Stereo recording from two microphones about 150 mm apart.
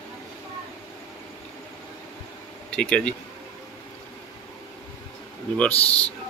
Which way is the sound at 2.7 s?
5° left (ahead or behind).